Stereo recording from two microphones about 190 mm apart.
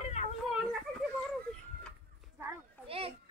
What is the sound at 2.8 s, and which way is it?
Children playing, 30° right (ahead or behind).